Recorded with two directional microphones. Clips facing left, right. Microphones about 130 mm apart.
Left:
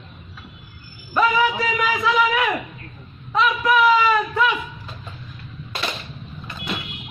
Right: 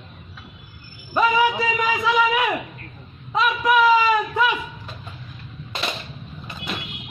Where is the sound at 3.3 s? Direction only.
15° right (ahead or behind).